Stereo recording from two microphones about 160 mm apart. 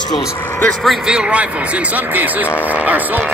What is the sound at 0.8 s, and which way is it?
A man's voice, 5° right (ahead or behind).